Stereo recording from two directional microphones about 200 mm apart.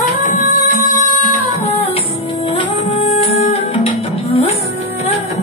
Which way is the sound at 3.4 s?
30° left (ahead or behind).